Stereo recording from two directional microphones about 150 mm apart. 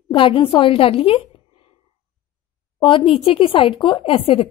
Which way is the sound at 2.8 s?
35° left (ahead or behind).